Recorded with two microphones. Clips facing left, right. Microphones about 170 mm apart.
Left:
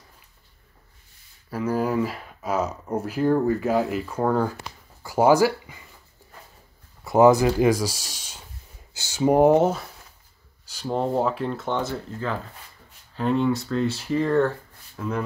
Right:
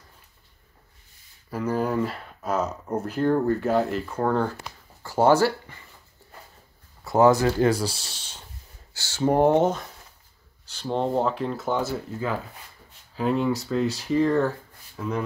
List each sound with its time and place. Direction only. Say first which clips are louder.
1.5 s speech: left 1 dB; 5° left (ahead or behind)
7.1 s speech: left 2 dB; 15° left (ahead or behind)
9.3 s speech: left 2 dB; 5° left (ahead or behind)